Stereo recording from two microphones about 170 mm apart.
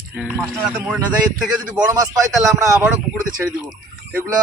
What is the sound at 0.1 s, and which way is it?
Speech, 10° right (ahead or behind).